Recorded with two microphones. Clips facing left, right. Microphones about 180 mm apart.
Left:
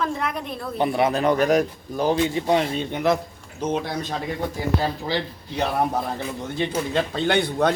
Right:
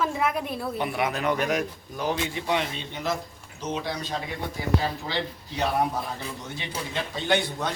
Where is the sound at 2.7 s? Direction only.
60° left (ahead or behind).